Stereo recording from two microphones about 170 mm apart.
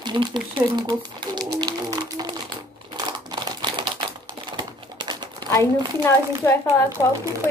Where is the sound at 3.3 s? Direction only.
25° right (ahead or behind).